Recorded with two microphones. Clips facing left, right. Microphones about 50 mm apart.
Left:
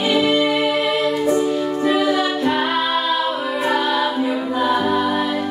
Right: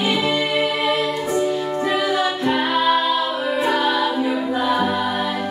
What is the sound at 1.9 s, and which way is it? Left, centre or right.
Music, centre.